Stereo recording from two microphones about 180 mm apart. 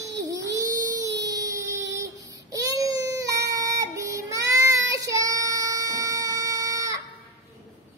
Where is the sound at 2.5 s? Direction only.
20° right (ahead or behind).